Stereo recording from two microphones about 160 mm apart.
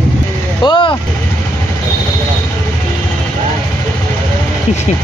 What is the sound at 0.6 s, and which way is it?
Speech, 30° left (ahead or behind).